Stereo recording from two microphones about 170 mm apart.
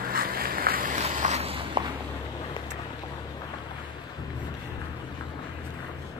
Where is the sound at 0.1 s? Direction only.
60° right (ahead or behind); by 1.9 s 30° right (ahead or behind).